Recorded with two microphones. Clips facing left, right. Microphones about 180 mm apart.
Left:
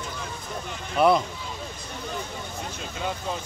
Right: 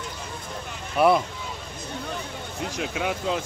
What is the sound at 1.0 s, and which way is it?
Speech, 5° right (ahead or behind).